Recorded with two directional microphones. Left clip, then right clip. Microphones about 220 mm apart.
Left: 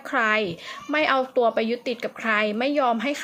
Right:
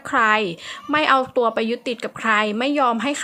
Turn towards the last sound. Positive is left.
turn(degrees=-20)  # may be behind; listen again after turning